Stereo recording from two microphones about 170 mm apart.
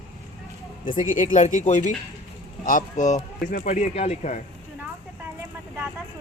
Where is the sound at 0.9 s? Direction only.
50° left (ahead or behind).